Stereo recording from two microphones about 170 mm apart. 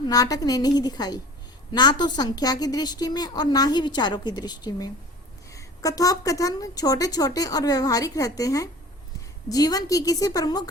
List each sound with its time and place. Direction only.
0.1 s a woman's voice: 20° left (ahead or behind)